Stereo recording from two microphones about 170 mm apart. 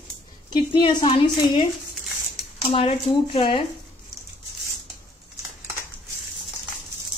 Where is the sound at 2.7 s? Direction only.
30° left (ahead or behind).